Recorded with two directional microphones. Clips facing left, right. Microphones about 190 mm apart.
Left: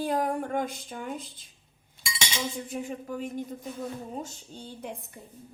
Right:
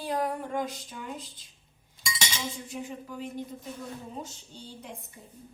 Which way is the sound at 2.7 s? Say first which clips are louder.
Left 4 dB; 50° left (ahead or behind).